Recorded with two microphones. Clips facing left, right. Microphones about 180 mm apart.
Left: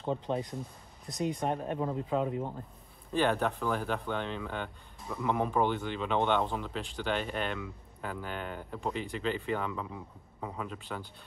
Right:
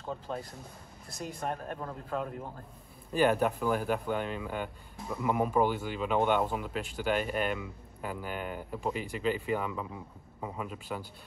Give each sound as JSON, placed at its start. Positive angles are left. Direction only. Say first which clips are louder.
{"t": 0.0, "sound": "speech", "louder": "left 5 dB", "side_deg": 20}
{"t": 1.1, "sound": "speech", "louder": "left 5 dB", "side_deg": -5}
{"t": 1.5, "sound": "speech", "louder": "left 5 dB", "side_deg": 20}
{"t": 2.1, "sound": "speech", "louder": "left 4 dB", "side_deg": 5}
{"t": 3.1, "sound": "speech", "louder": "right 2 dB", "side_deg": -5}